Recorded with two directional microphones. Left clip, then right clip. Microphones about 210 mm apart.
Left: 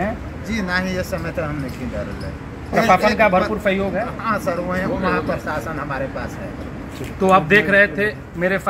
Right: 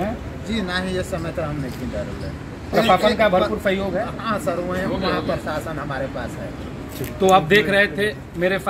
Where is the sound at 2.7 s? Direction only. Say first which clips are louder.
Left 2 dB; 10° right (ahead or behind).